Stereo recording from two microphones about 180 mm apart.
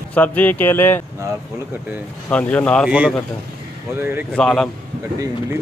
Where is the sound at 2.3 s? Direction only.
10° left (ahead or behind).